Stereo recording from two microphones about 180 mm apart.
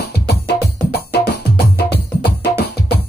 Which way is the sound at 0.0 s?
60° left (ahead or behind).